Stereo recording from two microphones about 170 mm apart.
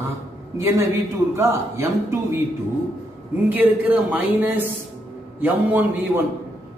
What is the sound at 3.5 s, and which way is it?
Speech, 10° right (ahead or behind).